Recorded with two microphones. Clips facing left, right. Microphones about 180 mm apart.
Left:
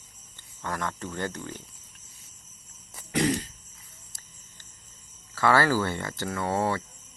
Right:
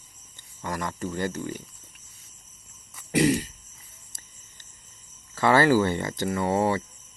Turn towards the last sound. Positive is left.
turn(degrees=-15)  # may be behind; listen again after turning